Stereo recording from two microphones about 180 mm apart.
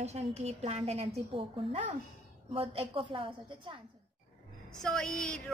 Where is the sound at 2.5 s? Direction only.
30° right (ahead or behind).